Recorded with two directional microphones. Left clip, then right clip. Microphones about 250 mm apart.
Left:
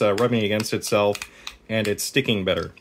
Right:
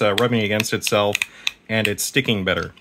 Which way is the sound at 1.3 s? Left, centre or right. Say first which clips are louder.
Right 4 dB; centre.